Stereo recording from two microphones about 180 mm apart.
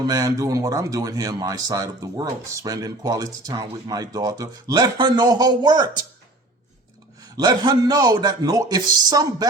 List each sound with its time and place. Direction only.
0.0 s speech: 20° right (ahead or behind)
7.2 s speech: 20° right (ahead or behind)